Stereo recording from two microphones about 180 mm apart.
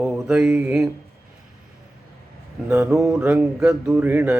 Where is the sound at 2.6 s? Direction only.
15° right (ahead or behind).